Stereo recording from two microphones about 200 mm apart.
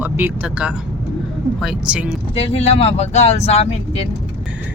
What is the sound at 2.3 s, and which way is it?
Speech, 30° left (ahead or behind).